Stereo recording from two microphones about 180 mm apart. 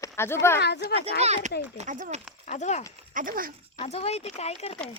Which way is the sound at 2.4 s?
40° left (ahead or behind).